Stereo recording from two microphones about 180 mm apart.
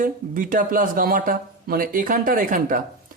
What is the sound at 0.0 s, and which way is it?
Speech, 50° right (ahead or behind).